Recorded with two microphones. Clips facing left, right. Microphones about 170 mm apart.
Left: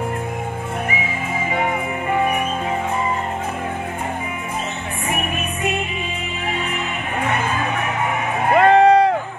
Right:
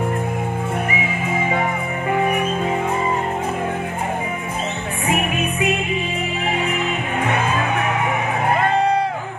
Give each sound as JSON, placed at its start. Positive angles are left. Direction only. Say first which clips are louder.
{"t": 8.5, "sound": "vehicle", "louder": "left 9 dB", "side_deg": 75}